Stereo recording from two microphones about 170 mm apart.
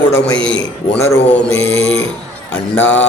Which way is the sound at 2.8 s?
10° left (ahead or behind).